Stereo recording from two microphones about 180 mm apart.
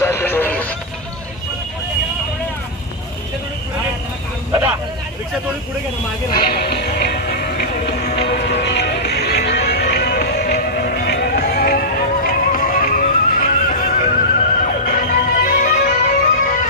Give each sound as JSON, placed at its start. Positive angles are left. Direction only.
{"t": 0.0, "sound": "music", "side_deg": 15}
{"t": 6.3, "sound": "music", "side_deg": 65}
{"t": 8.2, "sound": "music", "side_deg": 70}